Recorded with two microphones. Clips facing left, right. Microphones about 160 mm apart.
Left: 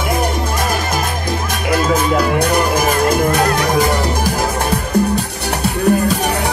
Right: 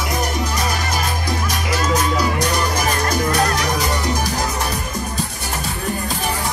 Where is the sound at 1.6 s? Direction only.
55° left (ahead or behind).